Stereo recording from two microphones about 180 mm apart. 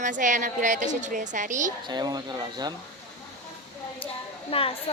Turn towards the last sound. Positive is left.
turn(degrees=30)  # may be behind; listen again after turning